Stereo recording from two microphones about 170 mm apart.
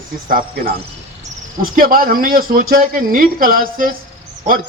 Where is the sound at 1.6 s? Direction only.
55° right (ahead or behind).